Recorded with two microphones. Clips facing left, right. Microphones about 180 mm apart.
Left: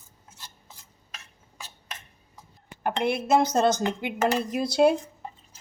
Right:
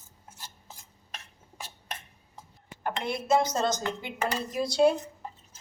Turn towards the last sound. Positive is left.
turn(degrees=60)  # may be behind; listen again after turning